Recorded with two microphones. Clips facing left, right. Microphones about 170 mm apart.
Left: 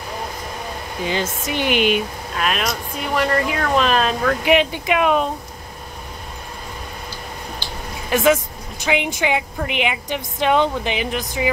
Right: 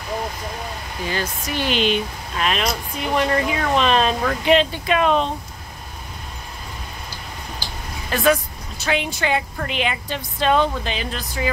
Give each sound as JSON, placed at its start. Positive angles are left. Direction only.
{"t": 1.0, "sound": "a woman's voice", "side_deg": 20}
{"t": 4.5, "sound": "a woman's voice", "side_deg": 15}
{"t": 8.1, "sound": "a woman's voice", "side_deg": 20}